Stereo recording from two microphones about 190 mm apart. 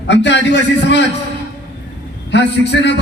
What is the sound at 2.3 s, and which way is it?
Speech, 65° left (ahead or behind).